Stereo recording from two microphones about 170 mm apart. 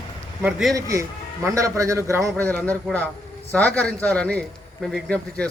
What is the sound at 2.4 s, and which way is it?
A man's voice, 10° left (ahead or behind).